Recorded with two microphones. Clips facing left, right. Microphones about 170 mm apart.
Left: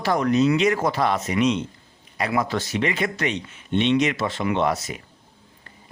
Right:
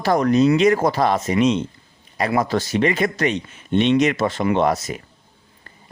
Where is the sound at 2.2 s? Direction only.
40° right (ahead or behind).